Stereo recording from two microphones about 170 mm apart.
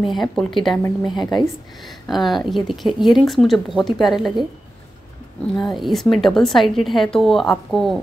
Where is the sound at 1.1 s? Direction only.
25° left (ahead or behind).